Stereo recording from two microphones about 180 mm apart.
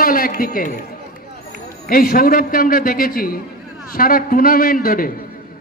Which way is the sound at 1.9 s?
55° left (ahead or behind).